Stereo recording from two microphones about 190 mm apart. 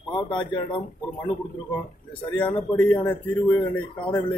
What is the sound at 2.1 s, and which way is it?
A man's voice, 5° left (ahead or behind).